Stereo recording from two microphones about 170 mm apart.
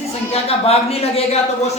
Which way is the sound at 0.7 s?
35° left (ahead or behind).